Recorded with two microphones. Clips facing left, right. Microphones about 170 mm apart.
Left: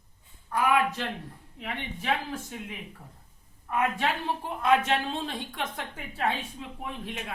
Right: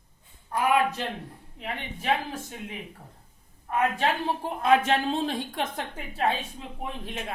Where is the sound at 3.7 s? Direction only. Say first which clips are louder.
Right 2 dB; 35° right (ahead or behind).